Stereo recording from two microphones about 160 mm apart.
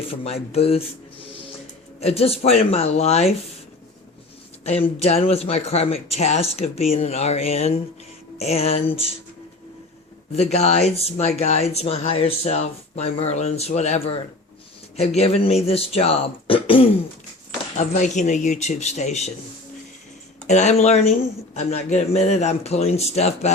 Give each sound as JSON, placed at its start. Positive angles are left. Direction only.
{"t": 0.1, "sound": "speech", "side_deg": 40}
{"t": 2.0, "sound": "speech", "side_deg": 40}
{"t": 4.6, "sound": "speech", "side_deg": 40}
{"t": 10.3, "sound": "speech", "side_deg": 40}
{"t": 17.7, "sound": "speech", "side_deg": 50}
{"t": 20.5, "sound": "speech", "side_deg": 45}